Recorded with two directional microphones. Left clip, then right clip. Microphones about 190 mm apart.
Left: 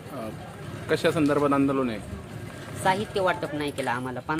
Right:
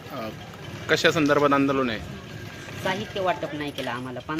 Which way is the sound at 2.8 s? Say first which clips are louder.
Left 2 dB; 25° left (ahead or behind).